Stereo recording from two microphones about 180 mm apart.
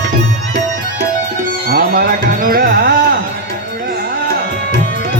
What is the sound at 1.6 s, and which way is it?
Music, 55° right (ahead or behind).